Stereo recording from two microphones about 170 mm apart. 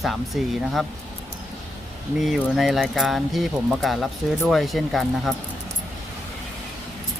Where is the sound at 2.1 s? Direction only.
Centre (ahead or behind).